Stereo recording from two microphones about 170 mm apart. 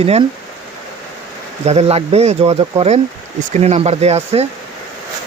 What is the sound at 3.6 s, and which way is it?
Speech, 40° right (ahead or behind).